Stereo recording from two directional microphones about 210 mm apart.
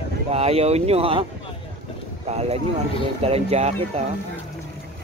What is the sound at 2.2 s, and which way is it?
Speech, 30° right (ahead or behind).